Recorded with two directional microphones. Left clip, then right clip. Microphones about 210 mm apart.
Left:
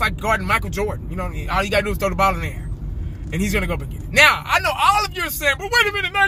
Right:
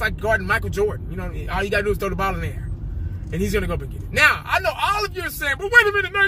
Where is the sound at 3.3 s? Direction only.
20° left (ahead or behind).